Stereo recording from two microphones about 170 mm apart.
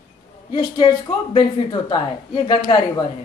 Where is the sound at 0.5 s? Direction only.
30° left (ahead or behind).